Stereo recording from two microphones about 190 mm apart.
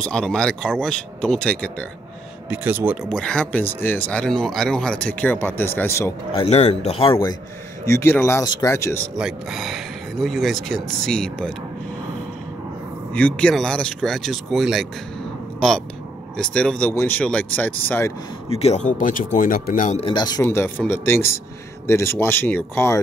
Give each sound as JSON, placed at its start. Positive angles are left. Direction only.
{"t": 0.0, "sound": "speech", "side_deg": 5}
{"t": 2.5, "sound": "speech", "side_deg": -10}
{"t": 3.1, "sound": "speech", "side_deg": 5}
{"t": 6.3, "sound": "speech", "side_deg": 35}
{"t": 7.9, "sound": "speech", "side_deg": 10}
{"t": 9.1, "sound": "speech", "side_deg": 0}
{"t": 13.1, "sound": "speech", "side_deg": 5}
{"t": 16.3, "sound": "speech", "side_deg": 5}
{"t": 18.5, "sound": "speech", "side_deg": 35}